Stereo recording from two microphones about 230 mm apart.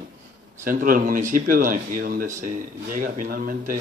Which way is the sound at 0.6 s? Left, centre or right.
Right.